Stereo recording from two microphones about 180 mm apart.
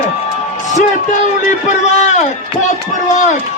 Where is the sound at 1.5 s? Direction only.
40° left (ahead or behind).